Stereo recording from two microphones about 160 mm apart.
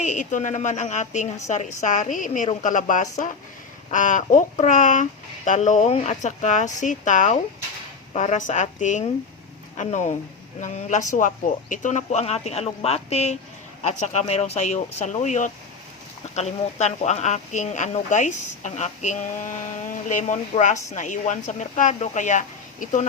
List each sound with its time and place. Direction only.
0.0 s speech: 50° left (ahead or behind)